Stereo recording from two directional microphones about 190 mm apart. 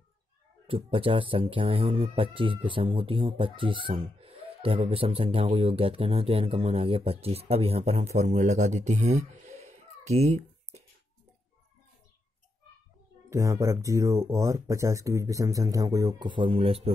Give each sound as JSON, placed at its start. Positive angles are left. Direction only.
{"t": 0.7, "sound": "speech", "side_deg": -30}
{"t": 13.3, "sound": "speech", "side_deg": -15}